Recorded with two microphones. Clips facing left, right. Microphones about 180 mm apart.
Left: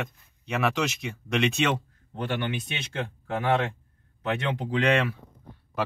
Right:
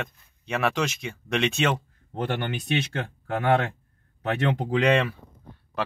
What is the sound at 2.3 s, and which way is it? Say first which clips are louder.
Speech: right 4 dB; 55° right (ahead or behind).